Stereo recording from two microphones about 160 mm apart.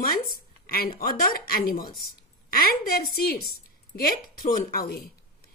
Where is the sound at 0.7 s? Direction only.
70° left (ahead or behind).